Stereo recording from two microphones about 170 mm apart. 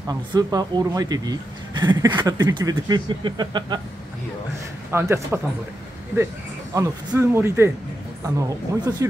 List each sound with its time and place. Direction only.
0.1 s speech: 25° right (ahead or behind)
4.9 s speech: 15° right (ahead or behind)
6.7 s speech: 15° right (ahead or behind)